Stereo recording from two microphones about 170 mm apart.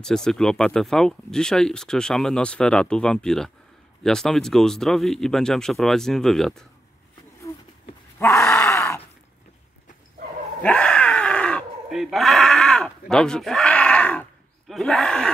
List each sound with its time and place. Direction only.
0.0 s speech: 5° left (ahead or behind)
8.2 s groan: 15° left (ahead or behind)
10.6 s groan: 5° left (ahead or behind)
14.7 s speech: centre (ahead or behind)